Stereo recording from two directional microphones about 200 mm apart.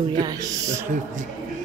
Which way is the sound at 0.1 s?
20° right (ahead or behind).